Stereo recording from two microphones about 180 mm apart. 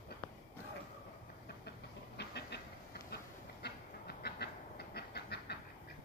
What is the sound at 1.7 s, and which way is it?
Train, 65° left (ahead or behind).